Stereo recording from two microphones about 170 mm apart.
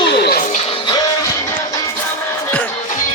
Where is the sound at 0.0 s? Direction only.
80° left.